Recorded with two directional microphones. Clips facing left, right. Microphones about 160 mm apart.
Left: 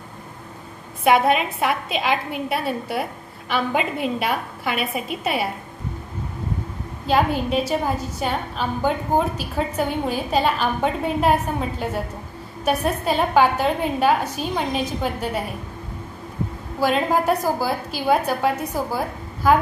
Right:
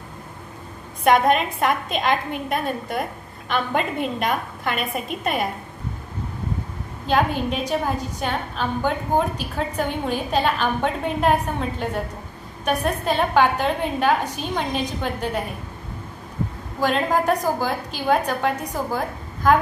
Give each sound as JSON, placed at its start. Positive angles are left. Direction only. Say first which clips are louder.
{"t": 1.0, "sound": "a woman's voice", "louder": "even", "side_deg": 5}
{"t": 7.1, "sound": "a woman's voice", "louder": "left 1 dB", "side_deg": 5}
{"t": 16.8, "sound": "a woman's voice", "louder": "left 1 dB", "side_deg": 10}